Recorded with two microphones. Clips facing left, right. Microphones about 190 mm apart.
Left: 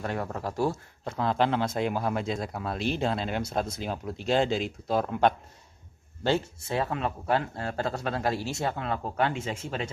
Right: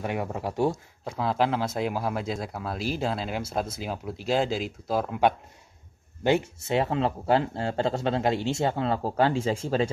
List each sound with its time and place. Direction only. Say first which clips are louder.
0.0 s speech: right 2 dB; 15° right (ahead or behind)
6.2 s speech: right 3 dB; 20° right (ahead or behind)